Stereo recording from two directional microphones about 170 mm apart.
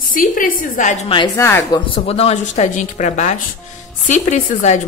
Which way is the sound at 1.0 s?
25° left (ahead or behind).